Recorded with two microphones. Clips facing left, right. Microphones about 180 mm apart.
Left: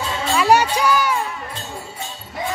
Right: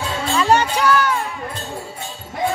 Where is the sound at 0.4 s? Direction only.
10° left (ahead or behind).